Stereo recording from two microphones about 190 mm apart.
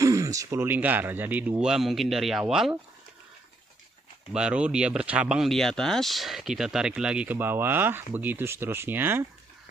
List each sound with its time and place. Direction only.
0.0 s speech: 15° right (ahead or behind)
4.3 s speech: 5° right (ahead or behind)